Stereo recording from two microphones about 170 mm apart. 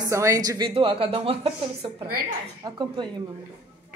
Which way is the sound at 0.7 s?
30° right (ahead or behind).